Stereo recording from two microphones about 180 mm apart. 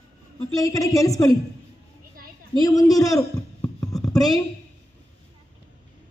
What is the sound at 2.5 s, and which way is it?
A woman's voice, 20° left (ahead or behind).